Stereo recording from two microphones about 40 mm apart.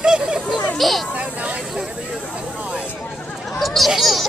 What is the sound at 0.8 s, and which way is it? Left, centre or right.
Speech, centre.